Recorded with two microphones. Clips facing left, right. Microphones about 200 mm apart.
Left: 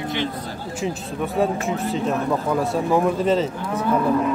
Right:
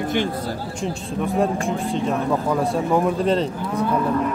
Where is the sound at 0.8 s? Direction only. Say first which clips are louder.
Left 2 dB; centre (ahead or behind).